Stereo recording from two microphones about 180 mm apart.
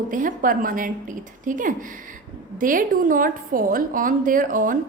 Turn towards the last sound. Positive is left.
turn(degrees=-50)  # may be behind; listen again after turning